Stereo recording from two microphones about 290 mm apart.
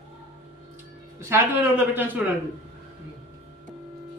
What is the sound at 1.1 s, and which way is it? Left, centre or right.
Speech, centre.